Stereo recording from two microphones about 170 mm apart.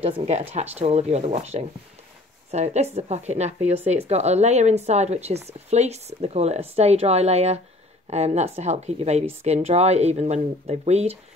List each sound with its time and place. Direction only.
0.0 s a woman's voice: 35° right (ahead or behind)